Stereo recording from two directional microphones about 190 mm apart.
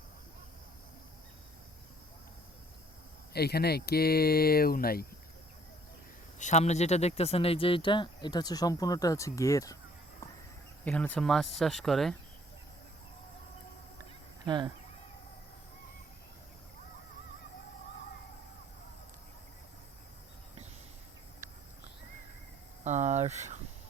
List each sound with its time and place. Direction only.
3.3 s speech: 55° left (ahead or behind)
6.4 s speech: 35° left (ahead or behind); by 9.7 s 15° left (ahead or behind)
10.8 s speech: 10° left (ahead or behind)
14.4 s speech: 20° right (ahead or behind)
22.8 s a sound: 40° right (ahead or behind)